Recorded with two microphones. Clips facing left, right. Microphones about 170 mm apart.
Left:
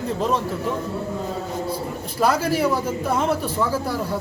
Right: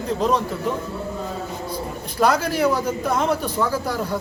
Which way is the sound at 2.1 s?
5° left (ahead or behind).